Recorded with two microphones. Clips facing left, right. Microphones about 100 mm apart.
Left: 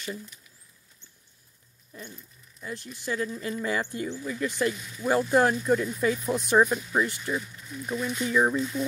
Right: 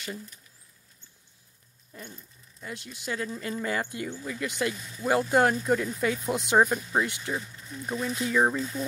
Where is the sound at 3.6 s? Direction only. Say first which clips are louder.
Left 1 dB; 50° right (ahead or behind).